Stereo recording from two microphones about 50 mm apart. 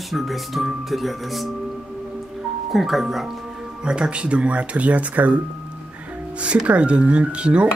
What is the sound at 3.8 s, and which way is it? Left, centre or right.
Speech, centre.